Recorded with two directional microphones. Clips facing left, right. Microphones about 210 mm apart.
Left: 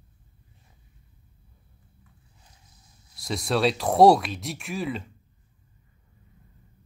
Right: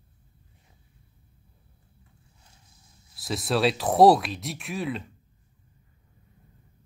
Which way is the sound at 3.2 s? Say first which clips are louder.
Even; centre (ahead or behind).